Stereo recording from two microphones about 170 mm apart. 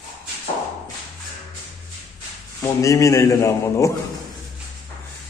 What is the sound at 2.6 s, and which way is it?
A man's voice, 20° left (ahead or behind).